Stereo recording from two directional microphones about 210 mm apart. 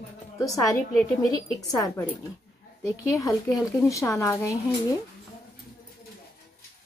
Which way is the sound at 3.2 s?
15° left (ahead or behind).